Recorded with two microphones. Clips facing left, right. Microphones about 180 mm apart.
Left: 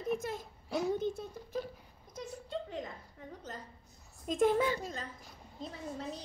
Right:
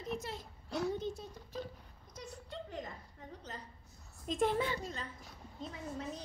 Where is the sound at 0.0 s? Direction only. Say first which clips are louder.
Left 5 dB; 50° left (ahead or behind).